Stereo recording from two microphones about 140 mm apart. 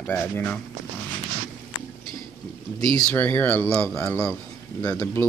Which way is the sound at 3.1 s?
15° left (ahead or behind).